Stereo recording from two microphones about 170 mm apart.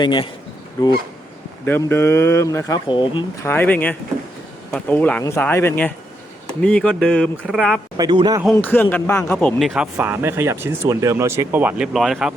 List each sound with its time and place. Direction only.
0.0 s speech: 25° left (ahead or behind)
1.6 s speech: 15° left (ahead or behind)
2.8 s speech: 30° left (ahead or behind)
3.4 s speech: 10° left (ahead or behind)
7.9 s a man's voice: 25° right (ahead or behind)
8.5 s speech: 10° left (ahead or behind); by 11.9 s 10° right (ahead or behind)
11.9 s speech: centre (ahead or behind)